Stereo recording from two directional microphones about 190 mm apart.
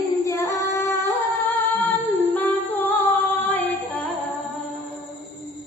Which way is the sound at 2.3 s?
10° left (ahead or behind).